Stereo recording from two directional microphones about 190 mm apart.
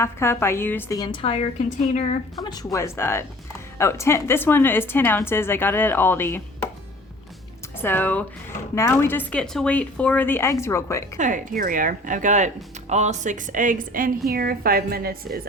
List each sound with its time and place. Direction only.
0.0 s a woman's voice: 15° left (ahead or behind); by 2.2 s 35° left (ahead or behind)
2.3 s speech: 20° left (ahead or behind)
7.8 s speech: 10° left (ahead or behind)
11.2 s speech: 45° right (ahead or behind)